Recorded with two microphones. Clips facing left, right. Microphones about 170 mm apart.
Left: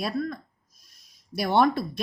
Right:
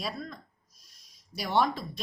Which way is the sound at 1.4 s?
60° left (ahead or behind).